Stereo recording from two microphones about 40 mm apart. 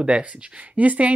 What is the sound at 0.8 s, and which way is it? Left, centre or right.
Speech, right.